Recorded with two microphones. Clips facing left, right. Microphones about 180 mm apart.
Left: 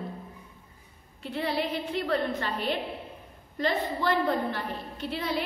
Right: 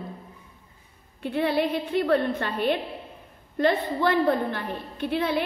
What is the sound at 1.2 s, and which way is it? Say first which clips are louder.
A woman's voice: right 6 dB; 55° right (ahead or behind).